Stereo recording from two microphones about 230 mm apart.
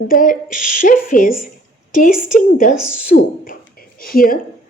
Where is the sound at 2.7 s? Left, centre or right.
Centre.